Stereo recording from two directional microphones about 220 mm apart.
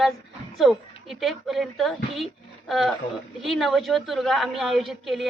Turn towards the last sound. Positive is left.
turn(degrees=0)  # may be behind; listen again after turning